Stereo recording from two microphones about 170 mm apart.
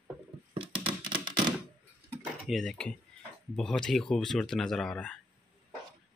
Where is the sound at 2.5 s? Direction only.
Centre (ahead or behind).